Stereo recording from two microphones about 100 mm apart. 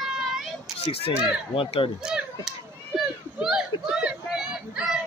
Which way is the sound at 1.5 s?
65° left (ahead or behind).